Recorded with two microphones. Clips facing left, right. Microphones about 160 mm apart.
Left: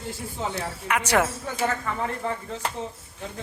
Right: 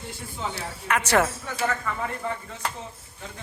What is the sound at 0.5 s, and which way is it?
Speech, 15° left (ahead or behind).